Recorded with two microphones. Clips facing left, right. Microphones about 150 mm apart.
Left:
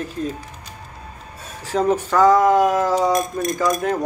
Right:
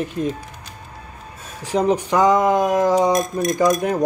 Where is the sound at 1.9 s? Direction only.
15° right (ahead or behind).